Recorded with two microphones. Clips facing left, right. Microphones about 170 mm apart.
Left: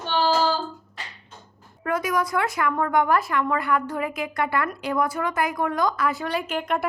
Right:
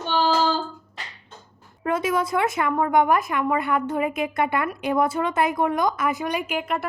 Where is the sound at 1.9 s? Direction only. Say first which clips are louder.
Right 1 dB; 25° right (ahead or behind).